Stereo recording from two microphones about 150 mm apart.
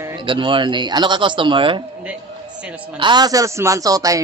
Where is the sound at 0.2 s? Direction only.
35° right (ahead or behind).